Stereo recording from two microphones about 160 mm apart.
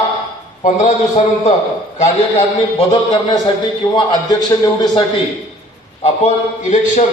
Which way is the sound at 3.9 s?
25° left (ahead or behind).